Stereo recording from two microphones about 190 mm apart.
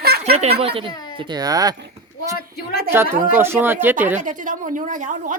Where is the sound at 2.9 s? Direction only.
10° right (ahead or behind).